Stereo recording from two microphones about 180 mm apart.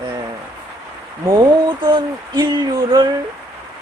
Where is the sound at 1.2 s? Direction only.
20° right (ahead or behind).